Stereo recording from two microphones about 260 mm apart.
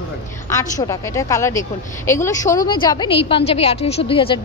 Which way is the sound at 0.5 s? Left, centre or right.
Centre.